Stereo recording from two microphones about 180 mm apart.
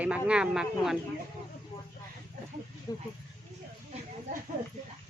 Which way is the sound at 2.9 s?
20° left (ahead or behind).